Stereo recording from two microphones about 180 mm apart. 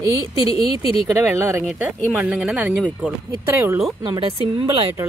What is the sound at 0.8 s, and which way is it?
Speech, 30° left (ahead or behind).